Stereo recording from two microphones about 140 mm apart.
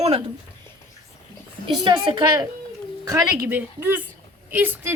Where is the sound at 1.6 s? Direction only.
35° right (ahead or behind).